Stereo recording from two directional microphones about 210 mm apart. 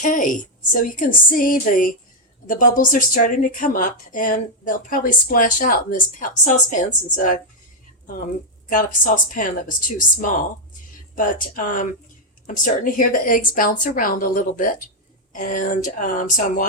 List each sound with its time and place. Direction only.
0.0 s a woman's voice: 40° left (ahead or behind)
8.7 s a woman's voice: 40° left (ahead or behind)
11.1 s a woman's voice: 40° left (ahead or behind)